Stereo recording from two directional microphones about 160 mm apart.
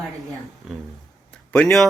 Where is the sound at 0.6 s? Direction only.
Centre (ahead or behind).